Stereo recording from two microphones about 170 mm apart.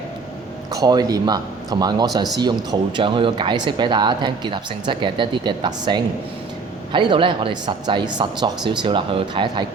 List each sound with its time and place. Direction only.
0.7 s speech: 20° right (ahead or behind)